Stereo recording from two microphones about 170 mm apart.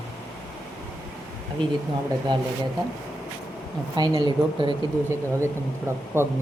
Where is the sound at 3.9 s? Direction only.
25° right (ahead or behind).